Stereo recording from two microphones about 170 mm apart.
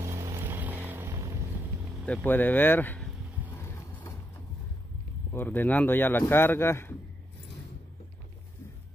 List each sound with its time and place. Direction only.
0.0 s vehicle: 15° right (ahead or behind)
2.0 s a man's voice: 10° left (ahead or behind)
3.5 s vehicle: 15° left (ahead or behind)
5.3 s a man's voice: 10° left (ahead or behind)